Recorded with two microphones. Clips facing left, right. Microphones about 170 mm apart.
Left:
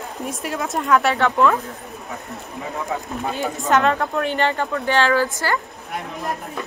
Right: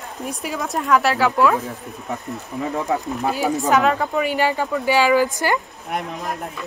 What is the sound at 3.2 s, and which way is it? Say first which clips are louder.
Speech: right 3 dB; 5° right (ahead or behind).